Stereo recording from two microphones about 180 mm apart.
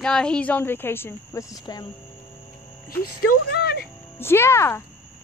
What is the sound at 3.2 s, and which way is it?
Speech, 60° left (ahead or behind).